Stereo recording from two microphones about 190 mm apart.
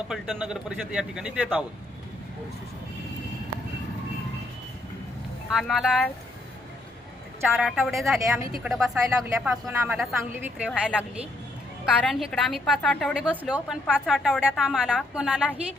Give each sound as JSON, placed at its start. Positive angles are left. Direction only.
{"t": 0.1, "sound": "a woman's voice", "side_deg": -5}
{"t": 5.5, "sound": "a woman's voice", "side_deg": 0}
{"t": 7.5, "sound": "a woman's voice", "side_deg": 0}
{"t": 10.7, "sound": "a woman's voice", "side_deg": 5}
{"t": 12.0, "sound": "a woman's voice", "side_deg": 0}
{"t": 13.3, "sound": "a woman's voice", "side_deg": -5}